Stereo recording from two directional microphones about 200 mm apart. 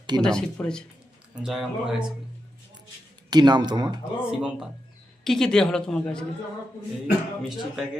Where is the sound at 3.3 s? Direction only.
20° right (ahead or behind).